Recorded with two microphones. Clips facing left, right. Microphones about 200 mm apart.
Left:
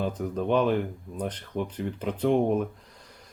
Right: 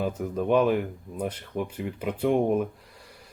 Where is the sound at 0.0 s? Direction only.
5° right (ahead or behind).